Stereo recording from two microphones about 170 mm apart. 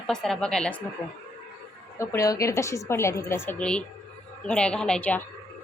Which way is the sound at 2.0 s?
15° left (ahead or behind).